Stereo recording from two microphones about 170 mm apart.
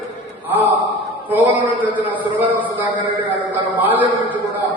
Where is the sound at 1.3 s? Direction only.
10° right (ahead or behind).